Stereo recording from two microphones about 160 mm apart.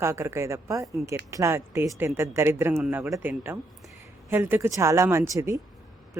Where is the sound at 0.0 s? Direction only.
15° right (ahead or behind).